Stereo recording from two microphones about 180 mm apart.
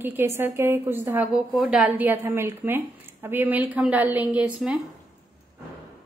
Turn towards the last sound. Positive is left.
turn(degrees=-5)  # may be behind; listen again after turning